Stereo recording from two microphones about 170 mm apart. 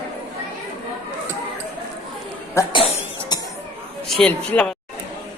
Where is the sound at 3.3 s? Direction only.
25° left (ahead or behind).